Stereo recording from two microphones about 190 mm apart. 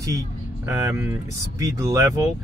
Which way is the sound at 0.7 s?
15° right (ahead or behind).